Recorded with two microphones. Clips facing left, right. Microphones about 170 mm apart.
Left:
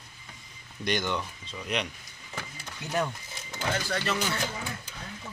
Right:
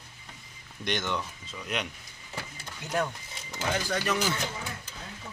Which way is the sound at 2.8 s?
Centre (ahead or behind).